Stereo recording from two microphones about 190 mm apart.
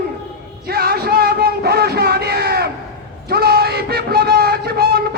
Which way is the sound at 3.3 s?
55° right (ahead or behind).